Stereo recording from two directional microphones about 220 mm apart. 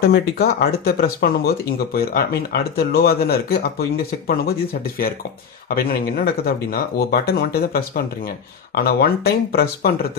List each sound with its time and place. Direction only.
0.1 s speech: 45° left (ahead or behind)